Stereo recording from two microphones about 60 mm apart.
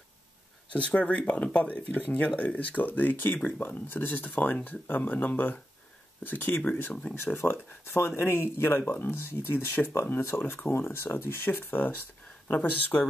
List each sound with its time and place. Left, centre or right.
0.7 s speech: left
6.9 s speech: centre
7.3 s speech: left
9.2 s speech: left